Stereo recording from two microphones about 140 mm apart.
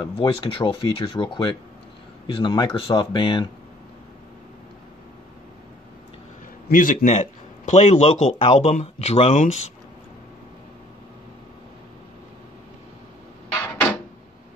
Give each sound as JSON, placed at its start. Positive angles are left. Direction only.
{"t": 0.0, "sound": "speech", "side_deg": 40}
{"t": 6.7, "sound": "a man's voice", "side_deg": 80}